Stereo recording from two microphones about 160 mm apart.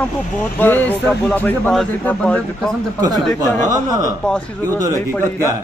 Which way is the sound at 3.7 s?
20° right (ahead or behind).